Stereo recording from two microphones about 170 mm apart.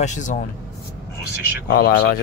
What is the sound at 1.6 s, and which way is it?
Speech, 65° left (ahead or behind).